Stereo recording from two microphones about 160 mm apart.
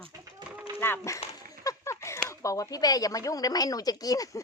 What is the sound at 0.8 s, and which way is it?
A woman's voice, 15° left (ahead or behind).